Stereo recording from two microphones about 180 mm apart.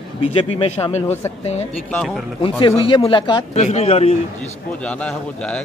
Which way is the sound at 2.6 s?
30° left (ahead or behind).